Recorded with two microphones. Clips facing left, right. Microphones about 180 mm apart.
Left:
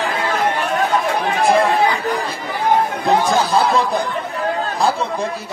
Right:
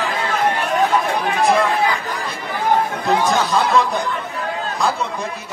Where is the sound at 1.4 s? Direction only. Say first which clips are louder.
Left 2 dB; 30° left (ahead or behind).